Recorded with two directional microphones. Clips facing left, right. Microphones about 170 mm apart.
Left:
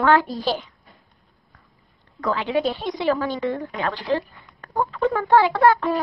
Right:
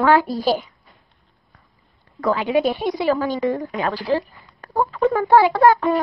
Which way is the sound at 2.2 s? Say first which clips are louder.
Right 4 dB; 10° right (ahead or behind).